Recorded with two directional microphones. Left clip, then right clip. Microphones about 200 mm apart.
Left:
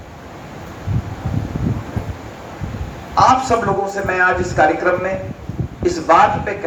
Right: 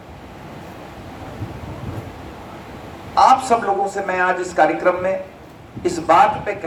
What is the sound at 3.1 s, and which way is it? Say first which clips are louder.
A man's voice: even; 60° right (ahead or behind).